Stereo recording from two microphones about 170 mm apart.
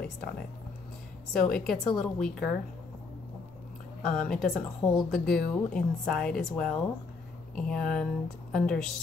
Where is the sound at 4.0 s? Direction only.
5° left (ahead or behind).